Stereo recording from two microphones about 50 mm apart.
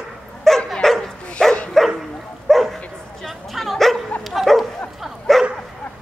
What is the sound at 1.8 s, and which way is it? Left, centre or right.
Bow-wow, centre.